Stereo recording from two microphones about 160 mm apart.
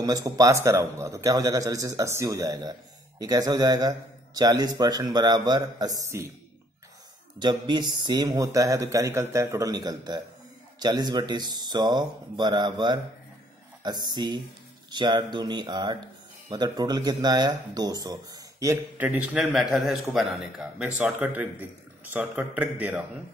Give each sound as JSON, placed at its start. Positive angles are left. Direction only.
{"t": 0.0, "sound": "a man's voice", "side_deg": -20}
{"t": 7.3, "sound": "a man's voice", "side_deg": -25}